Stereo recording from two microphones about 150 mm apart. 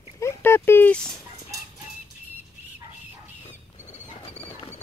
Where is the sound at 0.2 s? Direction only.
15° left (ahead or behind).